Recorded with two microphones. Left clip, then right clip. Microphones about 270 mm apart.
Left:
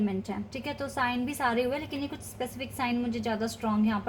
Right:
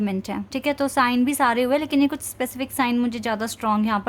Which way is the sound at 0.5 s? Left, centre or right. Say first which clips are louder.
Right 13 dB; right.